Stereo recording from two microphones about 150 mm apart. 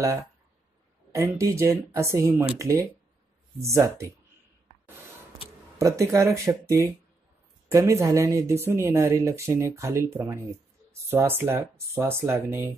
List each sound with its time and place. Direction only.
1.1 s speech: 20° right (ahead or behind)
5.8 s speech: 20° right (ahead or behind)